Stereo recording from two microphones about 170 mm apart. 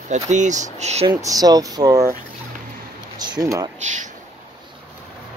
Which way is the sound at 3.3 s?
20° right (ahead or behind).